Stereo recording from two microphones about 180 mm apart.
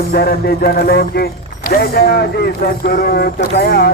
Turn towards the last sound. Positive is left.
turn(degrees=60)  # may be behind; listen again after turning